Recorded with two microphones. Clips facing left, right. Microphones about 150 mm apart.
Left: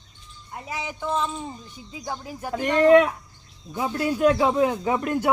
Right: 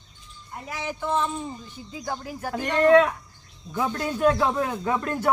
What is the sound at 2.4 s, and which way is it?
Speech, 15° left (ahead or behind).